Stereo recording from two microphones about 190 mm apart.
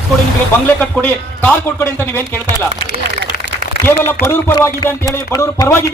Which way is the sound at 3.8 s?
15° left (ahead or behind).